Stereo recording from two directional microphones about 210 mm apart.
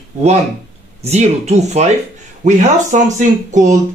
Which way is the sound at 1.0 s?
30° right (ahead or behind).